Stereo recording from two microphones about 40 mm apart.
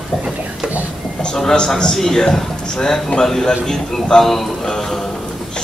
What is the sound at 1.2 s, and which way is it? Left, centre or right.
Speech, centre.